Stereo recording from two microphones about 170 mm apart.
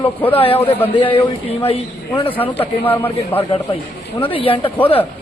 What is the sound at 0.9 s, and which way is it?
Speech, 30° left (ahead or behind).